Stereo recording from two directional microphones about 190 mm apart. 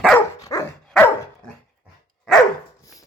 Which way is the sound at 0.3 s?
15° left (ahead or behind).